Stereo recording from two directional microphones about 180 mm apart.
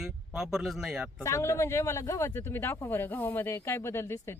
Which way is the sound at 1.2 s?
15° left (ahead or behind).